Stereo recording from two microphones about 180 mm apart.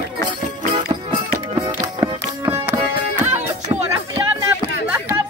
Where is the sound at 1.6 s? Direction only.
15° right (ahead or behind).